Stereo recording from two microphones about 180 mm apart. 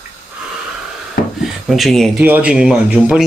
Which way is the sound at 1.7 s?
Centre (ahead or behind).